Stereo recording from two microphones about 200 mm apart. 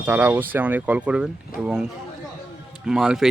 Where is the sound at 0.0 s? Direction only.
10° right (ahead or behind).